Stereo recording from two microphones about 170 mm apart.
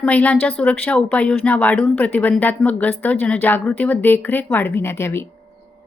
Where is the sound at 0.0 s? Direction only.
10° left (ahead or behind).